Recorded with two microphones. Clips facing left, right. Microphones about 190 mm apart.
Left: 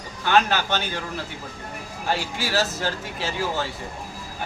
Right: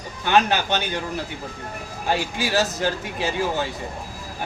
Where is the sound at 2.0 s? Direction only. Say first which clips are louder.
Right 3 dB; 15° right (ahead or behind).